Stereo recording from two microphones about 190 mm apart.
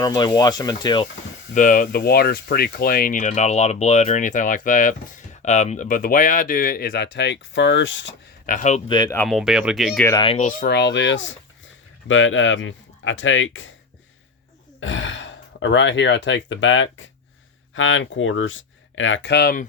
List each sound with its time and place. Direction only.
0.0 s speech: 20° left (ahead or behind)
1.5 s speech: 45° left (ahead or behind); by 8.1 s 70° left (ahead or behind)
8.4 s speech: 40° left (ahead or behind)
8.9 s speech: 20° left (ahead or behind)
9.1 s speech: centre (ahead or behind)
10.2 s speech: 30° left (ahead or behind)
10.7 s speech: 65° left (ahead or behind); by 13.7 s 90° left
14.8 s speech: 80° left; by 19.6 s 55° left (ahead or behind)